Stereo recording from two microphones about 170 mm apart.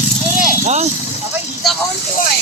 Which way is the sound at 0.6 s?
40° right (ahead or behind).